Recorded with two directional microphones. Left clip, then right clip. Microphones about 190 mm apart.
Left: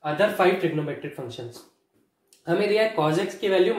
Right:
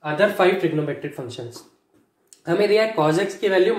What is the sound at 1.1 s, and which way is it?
Speech, 30° right (ahead or behind).